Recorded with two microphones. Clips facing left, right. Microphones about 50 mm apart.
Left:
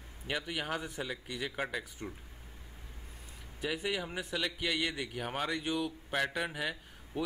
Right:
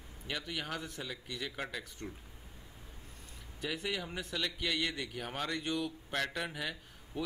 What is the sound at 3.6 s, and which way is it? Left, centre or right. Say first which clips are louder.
A man's voice: left 3 dB; centre.